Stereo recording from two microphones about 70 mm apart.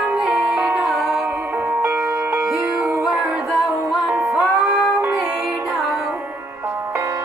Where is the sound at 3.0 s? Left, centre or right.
Centre.